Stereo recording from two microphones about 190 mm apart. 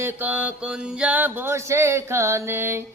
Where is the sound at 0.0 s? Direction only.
10° right (ahead or behind).